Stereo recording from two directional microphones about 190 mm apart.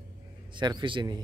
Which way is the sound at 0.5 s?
25° right (ahead or behind).